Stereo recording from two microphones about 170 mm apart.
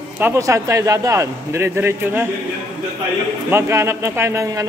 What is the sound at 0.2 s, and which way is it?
Speech, 20° right (ahead or behind).